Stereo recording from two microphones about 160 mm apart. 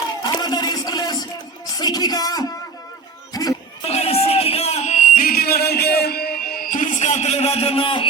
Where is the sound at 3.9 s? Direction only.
40° left (ahead or behind).